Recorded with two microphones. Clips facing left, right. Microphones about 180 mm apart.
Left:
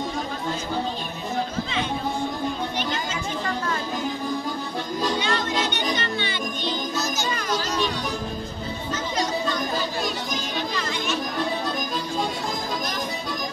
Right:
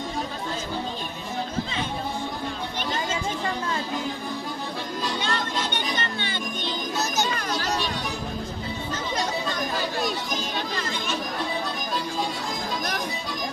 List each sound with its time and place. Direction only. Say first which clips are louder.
5.2 s music: left 3 dB; 50° right (ahead or behind)